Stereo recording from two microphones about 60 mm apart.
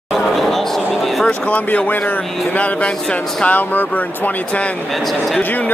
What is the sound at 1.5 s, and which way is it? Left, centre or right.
Speech, left.